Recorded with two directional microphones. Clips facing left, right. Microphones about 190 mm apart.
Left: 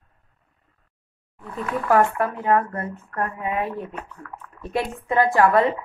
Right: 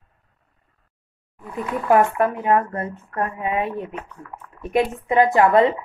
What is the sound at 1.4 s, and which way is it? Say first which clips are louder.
Speech: right 1 dB; 10° right (ahead or behind).